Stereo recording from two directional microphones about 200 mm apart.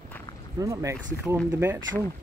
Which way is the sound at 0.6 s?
15° right (ahead or behind).